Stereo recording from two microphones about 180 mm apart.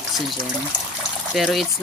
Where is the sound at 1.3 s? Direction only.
Centre (ahead or behind).